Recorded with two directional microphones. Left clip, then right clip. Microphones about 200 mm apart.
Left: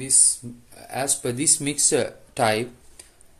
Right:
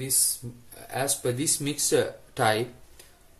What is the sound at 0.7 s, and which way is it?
Speech, 25° left (ahead or behind).